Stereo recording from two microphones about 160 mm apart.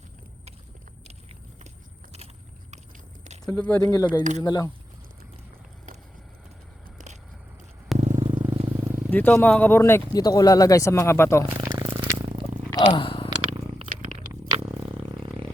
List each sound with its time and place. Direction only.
3.4 s speech: 10° left (ahead or behind)
3.8 s speech: 20° left (ahead or behind)
4.2 s speech: 50° right (ahead or behind)
4.4 s speech: 25° left (ahead or behind)
8.2 s vehicle: 30° right (ahead or behind)
9.0 s speech: 10° left (ahead or behind)
11.7 s a sound: 35° right (ahead or behind)
12.7 s a sound: 30° left (ahead or behind)
13.9 s purr: 50° right (ahead or behind)